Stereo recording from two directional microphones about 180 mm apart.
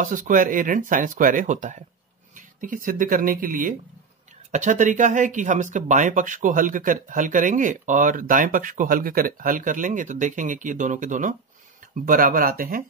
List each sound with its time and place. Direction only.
0.0 s speech: 45° right (ahead or behind)